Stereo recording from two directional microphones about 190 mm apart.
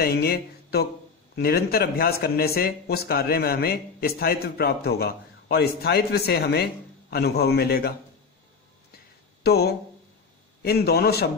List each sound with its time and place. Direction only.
0.0 s speech: 55° left (ahead or behind)
8.9 s a sound: 55° left (ahead or behind)
10.6 s speech: 55° left (ahead or behind)